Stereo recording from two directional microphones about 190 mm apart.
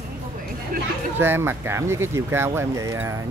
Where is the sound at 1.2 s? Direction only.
10° right (ahead or behind).